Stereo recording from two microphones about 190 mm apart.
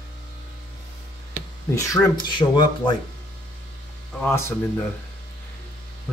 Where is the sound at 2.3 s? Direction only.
25° left (ahead or behind).